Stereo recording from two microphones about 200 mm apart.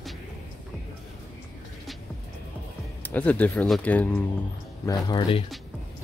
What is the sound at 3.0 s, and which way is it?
Speech, 10° left (ahead or behind).